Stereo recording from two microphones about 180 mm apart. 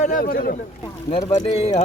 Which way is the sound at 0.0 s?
50° left (ahead or behind).